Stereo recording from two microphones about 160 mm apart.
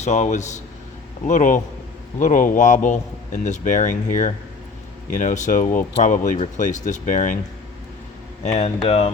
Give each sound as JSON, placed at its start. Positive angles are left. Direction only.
{"t": 0.0, "sound": "a man's voice", "side_deg": 45}
{"t": 8.4, "sound": "speech", "side_deg": 40}